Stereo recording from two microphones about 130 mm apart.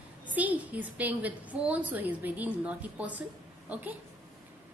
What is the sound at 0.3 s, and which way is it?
A woman's voice, 10° right (ahead or behind).